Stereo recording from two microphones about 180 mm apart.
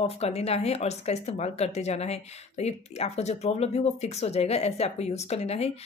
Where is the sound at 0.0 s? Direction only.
35° left (ahead or behind).